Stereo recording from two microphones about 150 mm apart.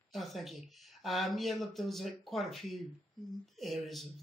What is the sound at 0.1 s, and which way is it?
Speech, centre (ahead or behind).